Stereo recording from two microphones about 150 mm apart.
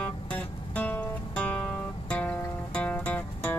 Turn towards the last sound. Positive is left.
turn(degrees=10)  # may be behind; listen again after turning